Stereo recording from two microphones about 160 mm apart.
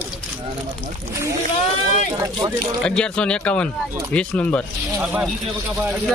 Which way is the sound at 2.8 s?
5° left (ahead or behind).